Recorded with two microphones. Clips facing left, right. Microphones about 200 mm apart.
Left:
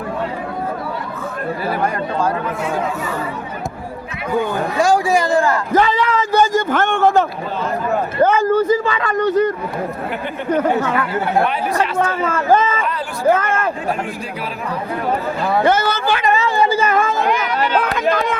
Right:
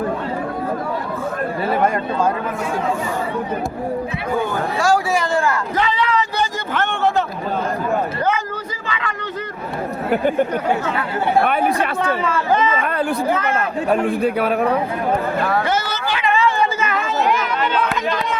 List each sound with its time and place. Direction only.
1.7 s speech: 25° right (ahead or behind)
4.4 s a man's voice: 15° left (ahead or behind)
5.7 s a sound: 45° left (ahead or behind)
10.1 s speech: 45° right (ahead or behind)
11.4 s a man's voice: 55° right (ahead or behind)
12.2 s speech: 45° left (ahead or behind)
13.3 s a sound: 50° left (ahead or behind)
14.2 s a man's voice: 60° right (ahead or behind)
15.6 s a sound: 55° left (ahead or behind)